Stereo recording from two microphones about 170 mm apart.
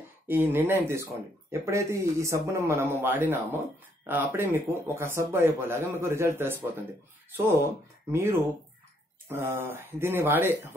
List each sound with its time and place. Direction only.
0.3 s speech: 10° right (ahead or behind)